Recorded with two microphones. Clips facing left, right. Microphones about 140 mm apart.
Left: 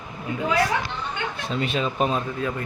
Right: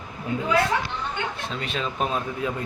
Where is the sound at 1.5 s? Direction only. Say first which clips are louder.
Left 8 dB; 5° left (ahead or behind).